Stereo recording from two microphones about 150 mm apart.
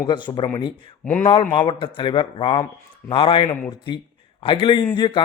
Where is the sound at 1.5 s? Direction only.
35° left (ahead or behind).